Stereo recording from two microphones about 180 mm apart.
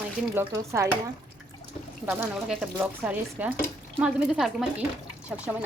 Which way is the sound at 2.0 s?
5° right (ahead or behind).